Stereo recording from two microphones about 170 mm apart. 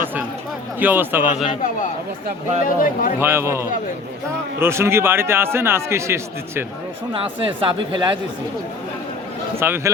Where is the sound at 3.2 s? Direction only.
15° right (ahead or behind).